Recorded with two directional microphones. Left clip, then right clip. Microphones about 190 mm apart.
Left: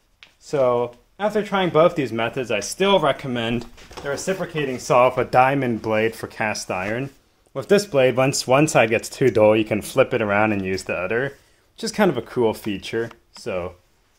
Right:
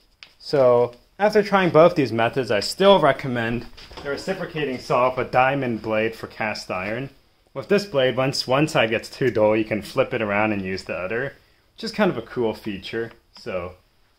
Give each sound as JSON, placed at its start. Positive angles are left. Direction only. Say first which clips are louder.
{"t": 0.4, "sound": "speech", "louder": "right 3 dB", "side_deg": -10}
{"t": 4.1, "sound": "speech", "louder": "left 1 dB", "side_deg": 55}
{"t": 4.8, "sound": "speech", "louder": "left 4 dB", "side_deg": 35}